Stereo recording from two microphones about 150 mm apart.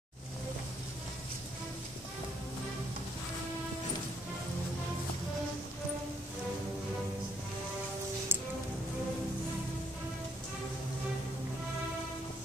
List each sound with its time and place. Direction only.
8.3 s music: 15° right (ahead or behind)